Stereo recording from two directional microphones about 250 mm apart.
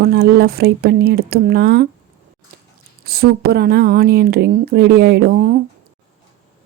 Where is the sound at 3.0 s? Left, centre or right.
Right.